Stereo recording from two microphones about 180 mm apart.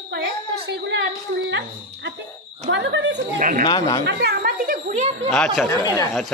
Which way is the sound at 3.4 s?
45° right (ahead or behind).